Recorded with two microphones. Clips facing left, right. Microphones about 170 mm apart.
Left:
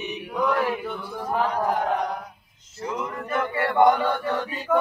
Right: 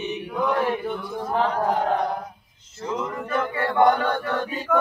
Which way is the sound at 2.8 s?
5° left (ahead or behind).